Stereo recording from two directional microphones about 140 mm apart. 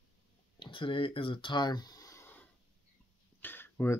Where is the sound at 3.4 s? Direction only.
15° left (ahead or behind).